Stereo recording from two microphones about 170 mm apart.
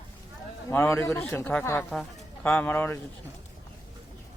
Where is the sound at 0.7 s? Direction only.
15° left (ahead or behind).